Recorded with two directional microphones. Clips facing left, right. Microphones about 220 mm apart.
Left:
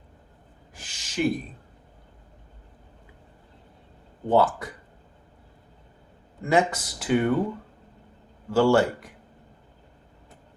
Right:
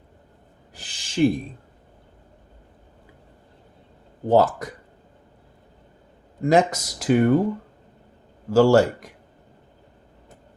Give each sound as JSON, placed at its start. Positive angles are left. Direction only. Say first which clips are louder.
{"t": 0.7, "sound": "a sound", "louder": "right 7 dB", "side_deg": -35}
{"t": 4.3, "sound": "speech", "louder": "right 3 dB", "side_deg": -40}
{"t": 6.4, "sound": "speech", "louder": "right 4 dB", "side_deg": -40}
{"t": 8.4, "sound": "speech", "louder": "right 4 dB", "side_deg": -40}